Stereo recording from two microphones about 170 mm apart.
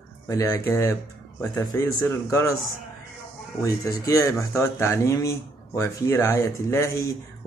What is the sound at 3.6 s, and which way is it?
Speech, 20° left (ahead or behind).